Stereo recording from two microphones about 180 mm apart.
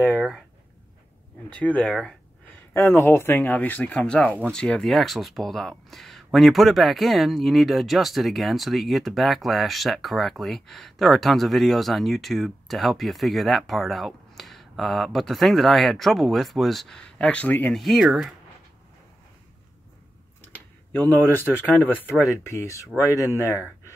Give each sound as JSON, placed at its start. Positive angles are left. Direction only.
{"t": 0.0, "sound": "speech", "side_deg": 0}
{"t": 1.6, "sound": "speech", "side_deg": 10}
{"t": 20.5, "sound": "speech", "side_deg": 10}